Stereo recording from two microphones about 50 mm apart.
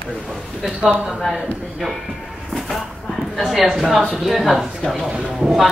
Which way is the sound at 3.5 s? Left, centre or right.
Centre.